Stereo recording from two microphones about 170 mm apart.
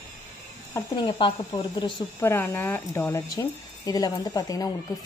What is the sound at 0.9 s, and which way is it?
Speech, 30° left (ahead or behind).